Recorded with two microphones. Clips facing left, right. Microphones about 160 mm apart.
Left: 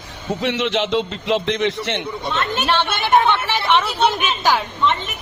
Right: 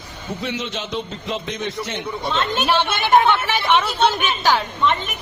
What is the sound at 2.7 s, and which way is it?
Speech, centre (ahead or behind).